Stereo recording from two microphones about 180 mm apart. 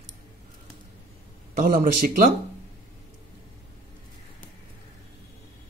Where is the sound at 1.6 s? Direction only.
50° right (ahead or behind).